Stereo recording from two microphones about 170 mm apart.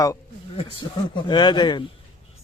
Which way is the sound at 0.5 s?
30° left (ahead or behind).